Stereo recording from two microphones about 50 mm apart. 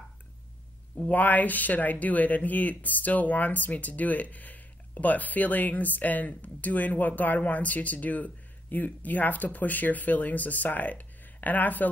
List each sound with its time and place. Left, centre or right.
0.9 s speech: left